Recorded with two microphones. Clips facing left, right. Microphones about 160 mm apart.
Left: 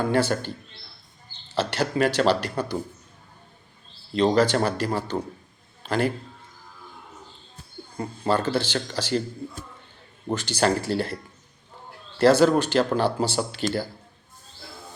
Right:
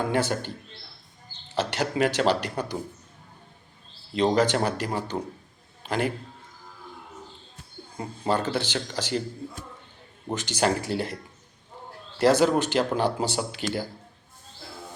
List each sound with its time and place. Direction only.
0.0 s speech: 15° right (ahead or behind)
1.5 s speech: 15° right (ahead or behind)
4.1 s a man's voice: 15° right (ahead or behind)
7.9 s speech: 20° right (ahead or behind)
10.3 s speech: 15° right (ahead or behind)
12.2 s speech: 15° right (ahead or behind)